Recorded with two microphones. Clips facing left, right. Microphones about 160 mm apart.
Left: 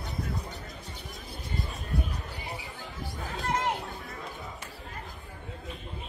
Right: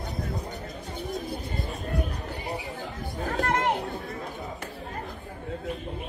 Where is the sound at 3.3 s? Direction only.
60° right (ahead or behind).